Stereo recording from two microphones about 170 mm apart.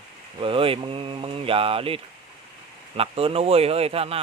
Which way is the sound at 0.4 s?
30° right (ahead or behind).